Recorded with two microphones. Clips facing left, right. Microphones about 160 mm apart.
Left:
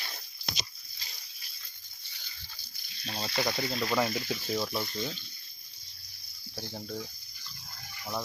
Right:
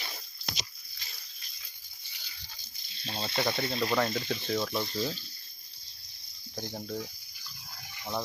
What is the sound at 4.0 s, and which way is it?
Speech, 10° left (ahead or behind).